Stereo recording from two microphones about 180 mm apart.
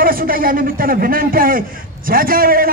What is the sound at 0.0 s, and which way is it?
A man's voice, 55° right (ahead or behind).